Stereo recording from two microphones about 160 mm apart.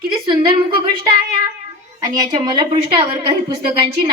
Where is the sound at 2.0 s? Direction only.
25° right (ahead or behind).